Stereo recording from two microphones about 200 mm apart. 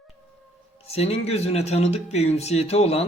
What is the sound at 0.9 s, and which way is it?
Speech, 30° left (ahead or behind).